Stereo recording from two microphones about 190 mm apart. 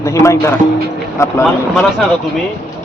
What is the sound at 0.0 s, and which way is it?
Speech, 15° left (ahead or behind).